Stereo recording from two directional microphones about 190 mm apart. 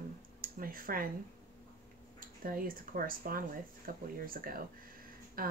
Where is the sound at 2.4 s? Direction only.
50° right (ahead or behind).